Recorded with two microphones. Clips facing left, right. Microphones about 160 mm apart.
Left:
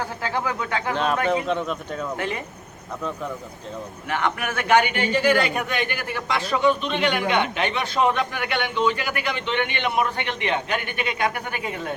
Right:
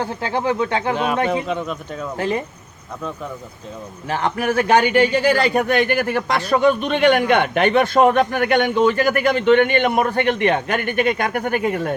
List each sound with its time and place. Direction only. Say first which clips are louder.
0.0 s speech: right 5 dB; 25° right (ahead or behind)
1.5 s speech: right 1 dB; 5° right (ahead or behind)
2.1 s a man's voice: right 10 dB; 35° right (ahead or behind)
4.1 s a man's voice: right 6 dB; 35° right (ahead or behind)
5.6 s a man's voice: right 9 dB; 55° right (ahead or behind)